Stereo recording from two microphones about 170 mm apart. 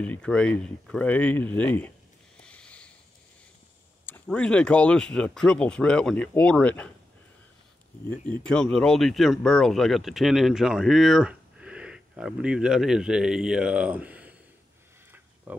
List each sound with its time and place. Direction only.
0.0 s speech: 5° left (ahead or behind)
2.4 s a sound: 5° left (ahead or behind)
4.0 s speech: 10° left (ahead or behind)
8.3 s speech: 5° left (ahead or behind)
15.5 s speech: 10° right (ahead or behind)